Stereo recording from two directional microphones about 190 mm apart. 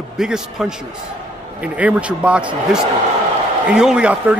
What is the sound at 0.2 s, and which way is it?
Speech, 5° right (ahead or behind).